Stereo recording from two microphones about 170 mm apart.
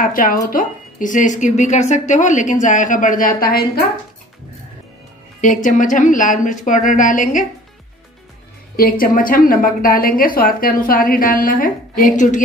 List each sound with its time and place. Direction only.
0.0 s a woman's voice: 55° left (ahead or behind)
5.4 s a woman's voice: 50° left (ahead or behind)
8.7 s a woman's voice: 60° left (ahead or behind)